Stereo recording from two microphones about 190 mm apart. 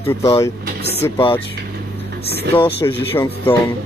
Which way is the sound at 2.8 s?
15° left (ahead or behind).